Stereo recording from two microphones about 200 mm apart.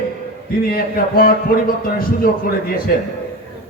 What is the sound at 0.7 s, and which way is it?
Speech, 45° left (ahead or behind).